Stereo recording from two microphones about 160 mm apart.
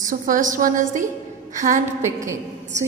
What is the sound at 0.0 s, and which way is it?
A woman's voice, 55° right (ahead or behind).